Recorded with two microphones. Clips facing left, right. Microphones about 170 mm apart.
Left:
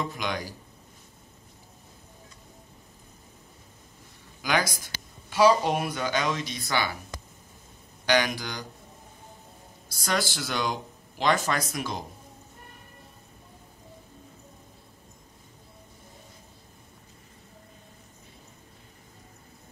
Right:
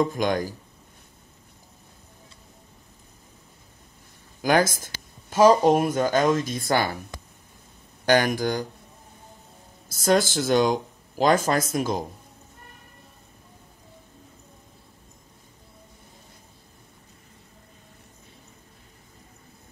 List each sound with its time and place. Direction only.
0.0 s speech: 45° right (ahead or behind)
4.4 s speech: 45° right (ahead or behind)
8.0 s speech: 50° right (ahead or behind)
9.8 s speech: 50° right (ahead or behind)